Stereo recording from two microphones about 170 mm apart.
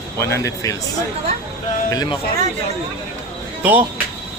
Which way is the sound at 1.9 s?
25° left (ahead or behind).